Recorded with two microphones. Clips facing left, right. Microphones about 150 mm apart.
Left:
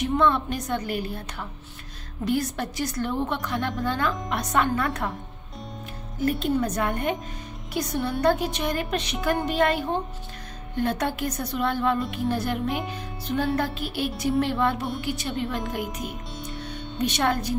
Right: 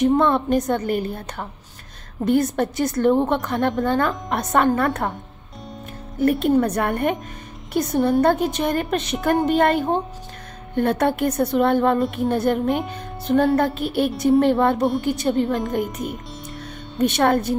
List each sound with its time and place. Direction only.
0.0 s a woman's voice: 50° right (ahead or behind)
6.1 s a woman's voice: 60° right (ahead or behind)
15.8 s speech: centre (ahead or behind)
16.6 s music: 55° right (ahead or behind)